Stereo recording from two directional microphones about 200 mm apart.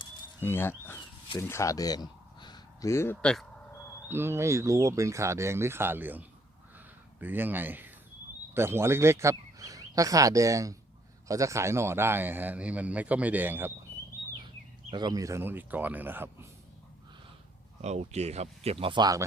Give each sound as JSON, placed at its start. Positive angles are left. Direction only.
{"t": 0.4, "sound": "speech", "side_deg": 10}
{"t": 4.1, "sound": "speech", "side_deg": -10}
{"t": 6.7, "sound": "a sound", "side_deg": -10}
{"t": 8.5, "sound": "speech", "side_deg": -10}
{"t": 14.4, "sound": "speech", "side_deg": -20}
{"t": 17.8, "sound": "speech", "side_deg": -35}